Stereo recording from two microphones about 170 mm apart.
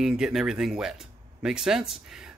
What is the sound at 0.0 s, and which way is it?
Speech, centre (ahead or behind).